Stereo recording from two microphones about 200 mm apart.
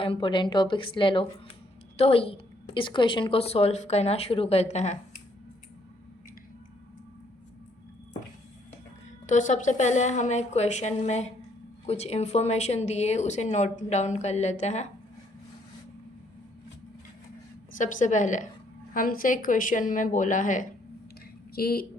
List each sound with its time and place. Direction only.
0.0 s a woman's voice: 25° left (ahead or behind)
9.2 s a woman's voice: 35° left (ahead or behind)
17.7 s a woman's voice: 40° left (ahead or behind)